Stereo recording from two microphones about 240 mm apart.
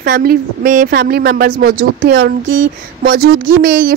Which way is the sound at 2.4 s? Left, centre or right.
Right.